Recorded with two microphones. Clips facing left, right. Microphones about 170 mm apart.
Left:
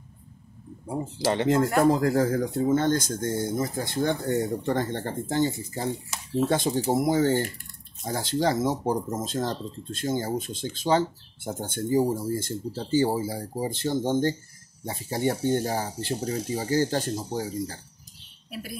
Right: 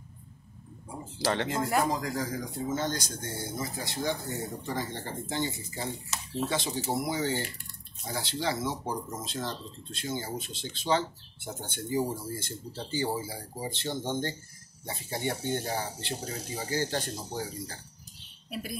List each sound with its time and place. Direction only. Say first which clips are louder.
1.2 s speech: left 4 dB; 15° left (ahead or behind)
1.8 s speech: left 9 dB; 60° left (ahead or behind); by 17.7 s 40° left (ahead or behind)